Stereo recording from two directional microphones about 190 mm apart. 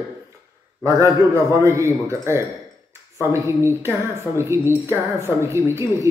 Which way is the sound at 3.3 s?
15° right (ahead or behind).